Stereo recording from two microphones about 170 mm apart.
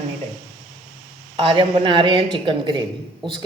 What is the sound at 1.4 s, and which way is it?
A woman's voice, 30° right (ahead or behind).